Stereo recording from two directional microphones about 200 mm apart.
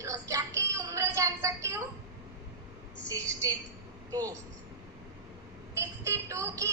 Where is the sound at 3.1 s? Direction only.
15° right (ahead or behind).